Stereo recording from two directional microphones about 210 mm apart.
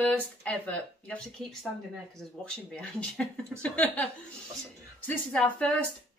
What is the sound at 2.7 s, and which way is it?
Speech, 5° left (ahead or behind).